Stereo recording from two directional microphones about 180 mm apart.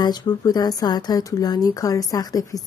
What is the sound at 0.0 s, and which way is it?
Speech, 20° left (ahead or behind).